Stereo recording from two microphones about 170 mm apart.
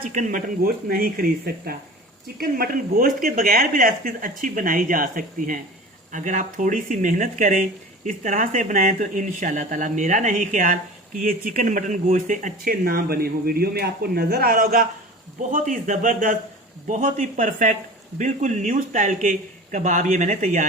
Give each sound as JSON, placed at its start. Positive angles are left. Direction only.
{"t": 0.1, "sound": "speech", "side_deg": -50}